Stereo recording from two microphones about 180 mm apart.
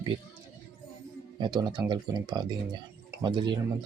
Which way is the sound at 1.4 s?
25° right (ahead or behind).